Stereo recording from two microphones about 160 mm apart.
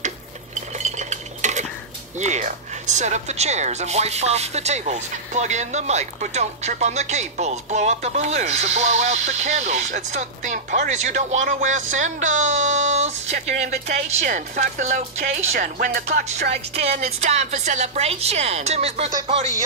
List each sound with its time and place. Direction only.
0.6 s cutlery: 45° right (ahead or behind)
2.1 s speech: 45° right (ahead or behind)